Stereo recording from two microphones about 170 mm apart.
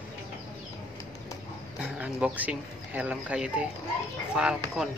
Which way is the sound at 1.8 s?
10° right (ahead or behind).